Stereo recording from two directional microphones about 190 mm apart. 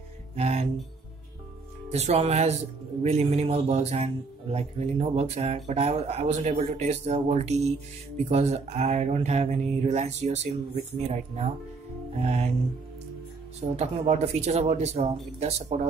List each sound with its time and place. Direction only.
0.4 s speech: 35° right (ahead or behind)
1.9 s speech: 35° right (ahead or behind)
13.7 s speech: 35° right (ahead or behind)